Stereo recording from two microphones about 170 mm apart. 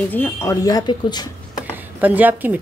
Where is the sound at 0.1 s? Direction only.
15° left (ahead or behind).